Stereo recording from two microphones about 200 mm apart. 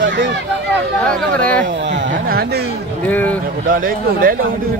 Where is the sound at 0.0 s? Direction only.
60° right (ahead or behind).